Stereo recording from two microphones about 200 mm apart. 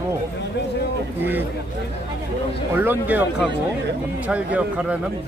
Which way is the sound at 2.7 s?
10° right (ahead or behind).